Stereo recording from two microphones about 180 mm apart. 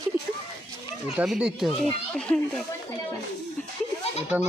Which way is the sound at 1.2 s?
5° right (ahead or behind).